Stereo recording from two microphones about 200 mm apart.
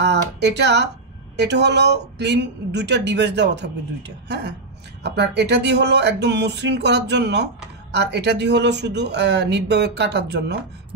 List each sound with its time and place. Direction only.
0.0 s a woman's voice: 60° right (ahead or behind)